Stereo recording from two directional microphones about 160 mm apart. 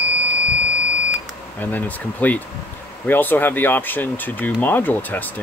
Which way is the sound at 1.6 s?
10° left (ahead or behind).